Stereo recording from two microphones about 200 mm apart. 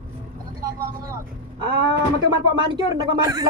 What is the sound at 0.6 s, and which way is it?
Vehicle, 20° right (ahead or behind).